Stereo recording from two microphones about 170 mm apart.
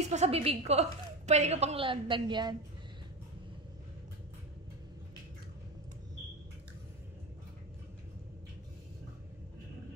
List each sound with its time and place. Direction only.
0.0 s a woman's voice: 40° right (ahead or behind)